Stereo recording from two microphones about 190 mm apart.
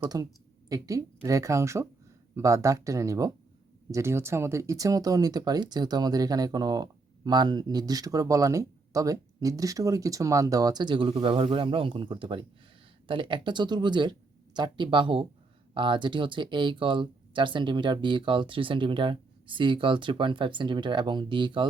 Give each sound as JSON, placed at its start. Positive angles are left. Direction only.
{"t": 0.0, "sound": "a woman's voice", "side_deg": -20}